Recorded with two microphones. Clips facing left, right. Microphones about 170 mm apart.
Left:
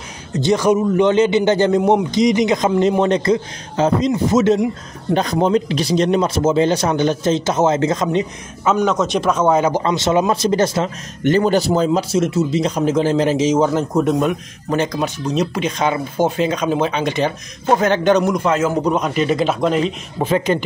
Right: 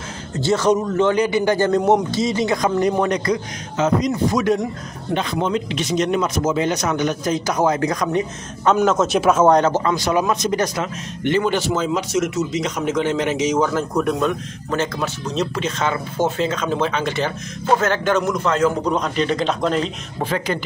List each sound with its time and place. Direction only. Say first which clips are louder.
0.3 s a man's voice: left 2 dB; 15° left (ahead or behind)
1.8 s a man's voice: left 1 dB; 5° left (ahead or behind)
2.0 s a man's voice: left 5 dB; 15° left (ahead or behind)
5.1 s a man's voice: left 5 dB; 40° left (ahead or behind); by 8.3 s 20° left (ahead or behind)
8.7 s speech: even; centre (ahead or behind)
9.6 s a man's voice: left 1 dB; 15° left (ahead or behind)
9.8 s a man's voice: left 3 dB; 25° left (ahead or behind)
11.2 s a man's voice: left 4 dB; 40° left (ahead or behind); by 20.2 s 5° left (ahead or behind)
20.2 s a man's voice: left 6 dB; 20° left (ahead or behind)